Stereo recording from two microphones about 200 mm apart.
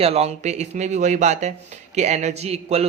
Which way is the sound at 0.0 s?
30° right (ahead or behind).